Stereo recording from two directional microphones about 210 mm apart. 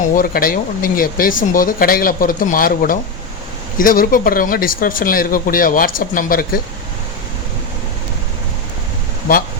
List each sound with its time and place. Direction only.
0.1 s speech: 40° left (ahead or behind)